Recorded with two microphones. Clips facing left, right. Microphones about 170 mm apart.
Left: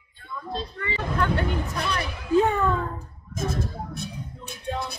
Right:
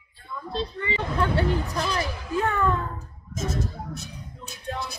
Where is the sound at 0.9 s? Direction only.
30° right (ahead or behind).